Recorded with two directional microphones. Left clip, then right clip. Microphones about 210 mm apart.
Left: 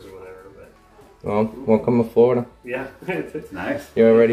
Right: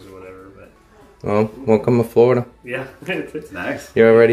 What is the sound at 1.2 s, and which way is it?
Speech, 25° right (ahead or behind).